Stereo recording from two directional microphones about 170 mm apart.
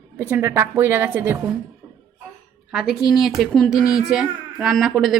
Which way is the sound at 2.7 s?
5° right (ahead or behind).